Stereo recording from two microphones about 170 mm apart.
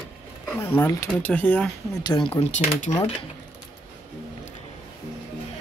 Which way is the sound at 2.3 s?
45° left (ahead or behind).